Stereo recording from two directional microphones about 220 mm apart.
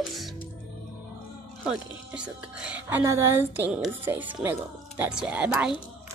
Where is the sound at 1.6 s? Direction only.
5° right (ahead or behind).